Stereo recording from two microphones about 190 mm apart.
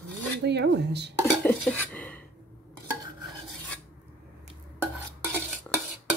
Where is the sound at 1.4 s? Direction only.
5° left (ahead or behind).